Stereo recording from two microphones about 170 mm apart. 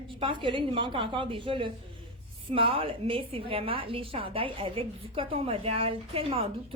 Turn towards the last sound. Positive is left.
turn(degrees=-35)  # may be behind; listen again after turning